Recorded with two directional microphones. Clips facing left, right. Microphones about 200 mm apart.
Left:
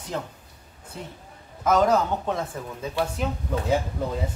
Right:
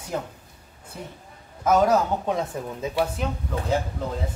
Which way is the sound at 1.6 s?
10° right (ahead or behind).